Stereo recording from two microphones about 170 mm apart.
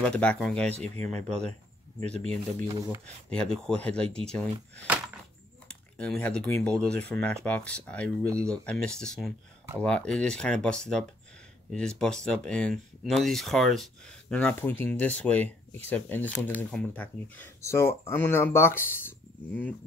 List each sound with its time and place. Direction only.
0.0 s speech: 5° left (ahead or behind)
0.7 s speech: 40° right (ahead or behind)
1.2 s speech: 5° left (ahead or behind)
3.3 s speech: 5° left (ahead or behind)
4.8 s a sound: 5° right (ahead or behind)
5.7 s speech: 5° left (ahead or behind)